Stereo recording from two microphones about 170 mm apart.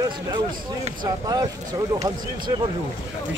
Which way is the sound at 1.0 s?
20° right (ahead or behind).